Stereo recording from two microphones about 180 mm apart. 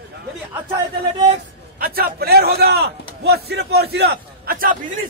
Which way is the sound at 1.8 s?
55° right (ahead or behind).